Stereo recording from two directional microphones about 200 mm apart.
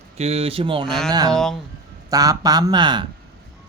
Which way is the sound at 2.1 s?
20° right (ahead or behind).